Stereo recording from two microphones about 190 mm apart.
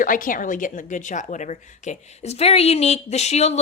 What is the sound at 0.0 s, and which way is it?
A woman's voice, 45° left (ahead or behind).